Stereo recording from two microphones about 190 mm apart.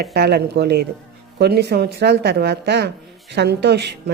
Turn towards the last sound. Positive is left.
turn(degrees=-60)  # may be behind; listen again after turning